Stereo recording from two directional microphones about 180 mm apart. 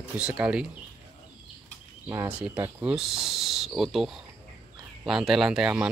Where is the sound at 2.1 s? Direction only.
15° right (ahead or behind).